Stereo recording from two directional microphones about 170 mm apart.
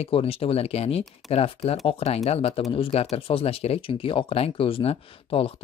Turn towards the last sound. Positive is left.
turn(degrees=35)  # may be behind; listen again after turning